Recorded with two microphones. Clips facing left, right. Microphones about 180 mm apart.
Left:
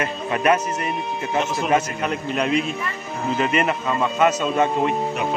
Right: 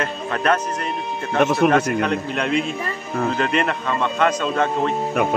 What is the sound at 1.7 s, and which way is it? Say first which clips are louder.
A man's voice: right 3 dB; 5° left (ahead or behind).